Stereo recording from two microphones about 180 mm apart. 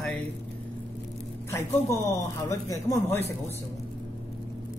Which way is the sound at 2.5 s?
20° left (ahead or behind).